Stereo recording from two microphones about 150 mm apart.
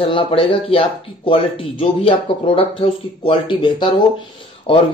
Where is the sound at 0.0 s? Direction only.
40° left (ahead or behind).